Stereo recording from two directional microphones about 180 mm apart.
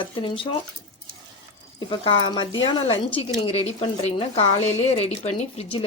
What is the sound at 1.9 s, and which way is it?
Speech, 25° left (ahead or behind).